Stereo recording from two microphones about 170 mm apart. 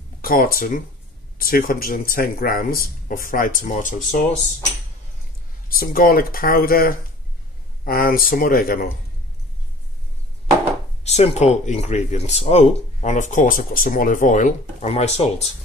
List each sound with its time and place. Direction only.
0.2 s speech: 55° left (ahead or behind)
5.7 s speech: 60° left (ahead or behind)
11.1 s speech: 40° left (ahead or behind)